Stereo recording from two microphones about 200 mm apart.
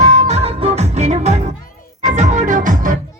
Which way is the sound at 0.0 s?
35° right (ahead or behind).